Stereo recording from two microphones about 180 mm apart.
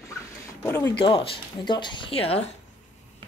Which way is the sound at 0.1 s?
20° left (ahead or behind).